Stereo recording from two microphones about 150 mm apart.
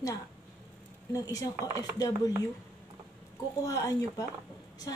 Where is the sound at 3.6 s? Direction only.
20° left (ahead or behind).